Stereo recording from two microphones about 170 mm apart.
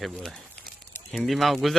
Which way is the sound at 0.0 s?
Centre (ahead or behind).